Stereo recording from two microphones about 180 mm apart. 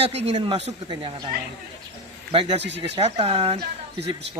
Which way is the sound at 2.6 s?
75° right (ahead or behind).